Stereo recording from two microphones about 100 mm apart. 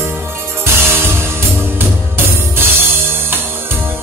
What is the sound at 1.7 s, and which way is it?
Music, 20° right (ahead or behind).